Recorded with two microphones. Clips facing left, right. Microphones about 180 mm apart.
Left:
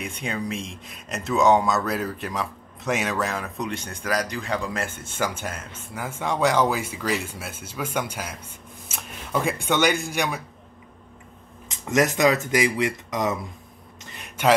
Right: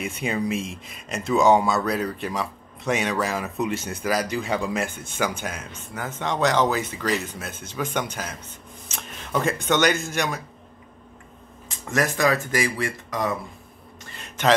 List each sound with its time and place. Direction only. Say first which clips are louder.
0.0 s speech: right 4 dB; 5° right (ahead or behind)
5.7 s speech: even; 10° left (ahead or behind)
11.7 s speech: left 3 dB; 20° left (ahead or behind)
14.0 s a sound: left 1 dB; 15° left (ahead or behind)